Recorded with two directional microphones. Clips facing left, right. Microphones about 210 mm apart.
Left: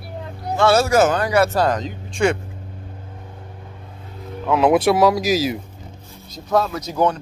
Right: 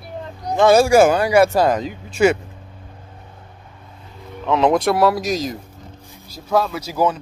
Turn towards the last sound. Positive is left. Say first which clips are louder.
# even
turn(degrees=-5)  # may be behind; listen again after turning